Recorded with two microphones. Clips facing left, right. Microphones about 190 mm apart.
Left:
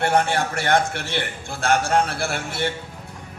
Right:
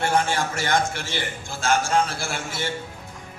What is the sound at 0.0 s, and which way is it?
A man's voice, 65° left (ahead or behind).